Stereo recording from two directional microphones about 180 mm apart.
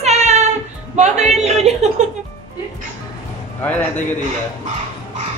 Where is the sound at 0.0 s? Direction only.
40° right (ahead or behind).